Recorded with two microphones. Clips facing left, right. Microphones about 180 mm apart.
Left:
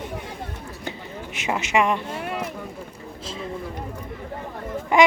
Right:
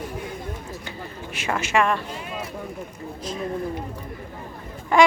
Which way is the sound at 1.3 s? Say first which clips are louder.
Even; 20° left (ahead or behind).